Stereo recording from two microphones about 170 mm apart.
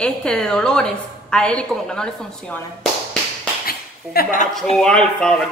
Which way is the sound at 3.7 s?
60° left (ahead or behind).